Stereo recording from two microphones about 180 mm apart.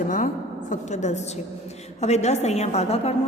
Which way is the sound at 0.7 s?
40° left (ahead or behind).